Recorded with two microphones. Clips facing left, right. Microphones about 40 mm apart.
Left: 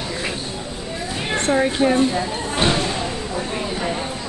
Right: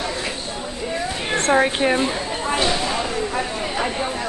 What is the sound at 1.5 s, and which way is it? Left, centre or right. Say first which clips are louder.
Speech: even; right.